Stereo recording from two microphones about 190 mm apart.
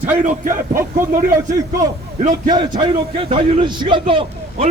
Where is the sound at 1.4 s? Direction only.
15° right (ahead or behind).